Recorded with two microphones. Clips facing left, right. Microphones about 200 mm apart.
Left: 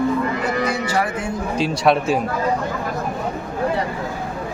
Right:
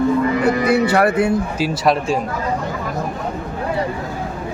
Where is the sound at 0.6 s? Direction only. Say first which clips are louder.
Right 7 dB; 65° right (ahead or behind).